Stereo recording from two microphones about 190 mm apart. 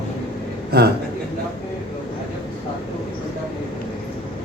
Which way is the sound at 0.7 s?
55° right (ahead or behind).